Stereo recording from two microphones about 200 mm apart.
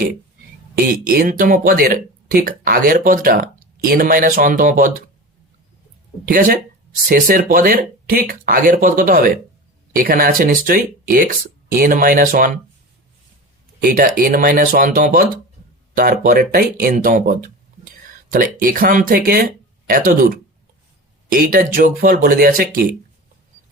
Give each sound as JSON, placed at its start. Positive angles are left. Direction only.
{"t": 0.9, "sound": "speech", "side_deg": -45}
{"t": 6.2, "sound": "speech", "side_deg": -45}
{"t": 13.8, "sound": "speech", "side_deg": -45}